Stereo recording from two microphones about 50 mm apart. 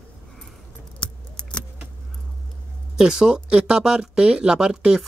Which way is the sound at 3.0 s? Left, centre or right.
Centre.